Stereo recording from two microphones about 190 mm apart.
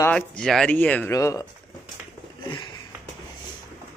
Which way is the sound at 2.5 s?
25° left (ahead or behind).